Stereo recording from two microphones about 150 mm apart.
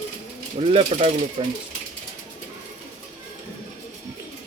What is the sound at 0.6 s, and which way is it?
Speech, 40° right (ahead or behind).